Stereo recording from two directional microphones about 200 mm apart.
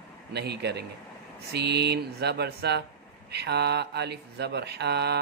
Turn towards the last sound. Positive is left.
turn(degrees=-55)  # may be behind; listen again after turning